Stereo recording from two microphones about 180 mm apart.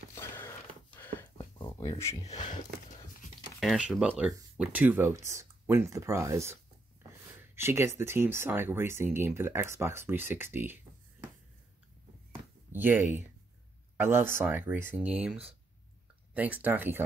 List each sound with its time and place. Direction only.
0.1 s a sound: 15° left (ahead or behind)
3.5 s speech: 5° right (ahead or behind)
12.7 s speech: 10° right (ahead or behind)